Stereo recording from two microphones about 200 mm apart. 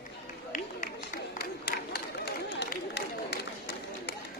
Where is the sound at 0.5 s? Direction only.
40° left (ahead or behind).